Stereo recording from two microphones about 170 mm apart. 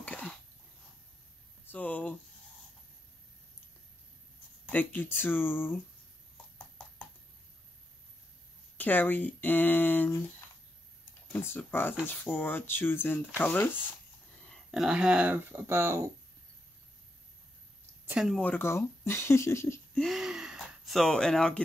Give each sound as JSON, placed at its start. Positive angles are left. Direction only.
{"t": 0.0, "sound": "a sound", "side_deg": 10}
{"t": 1.7, "sound": "a sound", "side_deg": 10}
{"t": 4.6, "sound": "speech", "side_deg": 10}
{"t": 8.7, "sound": "speech", "side_deg": 10}
{"t": 11.3, "sound": "speech", "side_deg": 10}
{"t": 14.5, "sound": "speech", "side_deg": 0}
{"t": 18.0, "sound": "speech", "side_deg": -5}
{"t": 18.4, "sound": "speech", "side_deg": 10}
{"t": 19.9, "sound": "speech", "side_deg": 0}